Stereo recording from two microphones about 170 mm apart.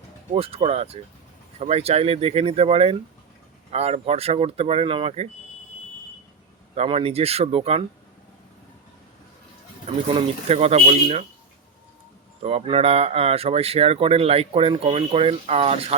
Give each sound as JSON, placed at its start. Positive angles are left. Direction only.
{"t": 0.3, "sound": "speech", "side_deg": -35}
{"t": 6.7, "sound": "speech", "side_deg": -35}
{"t": 10.2, "sound": "speech", "side_deg": -35}
{"t": 12.4, "sound": "speech", "side_deg": -35}